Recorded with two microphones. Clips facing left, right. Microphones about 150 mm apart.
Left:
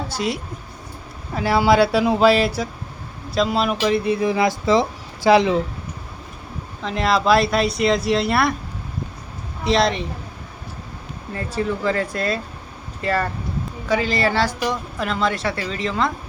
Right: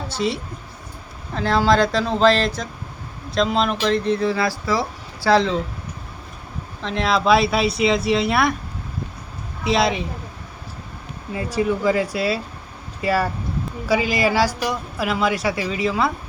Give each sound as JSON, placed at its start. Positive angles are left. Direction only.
{"t": 0.2, "sound": "speech", "side_deg": 5}
{"t": 6.8, "sound": "speech", "side_deg": 0}
{"t": 9.6, "sound": "speech", "side_deg": -5}
{"t": 11.5, "sound": "speech", "side_deg": -10}